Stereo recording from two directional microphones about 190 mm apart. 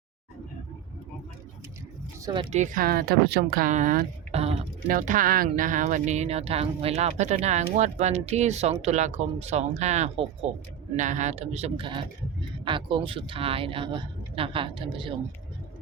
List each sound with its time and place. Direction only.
2.2 s speech: 25° right (ahead or behind)
2.5 s speech: 40° right (ahead or behind)
4.9 s speech: 45° right (ahead or behind); by 15.1 s 25° right (ahead or behind)